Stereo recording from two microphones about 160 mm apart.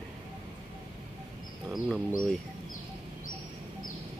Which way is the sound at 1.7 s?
Centre (ahead or behind).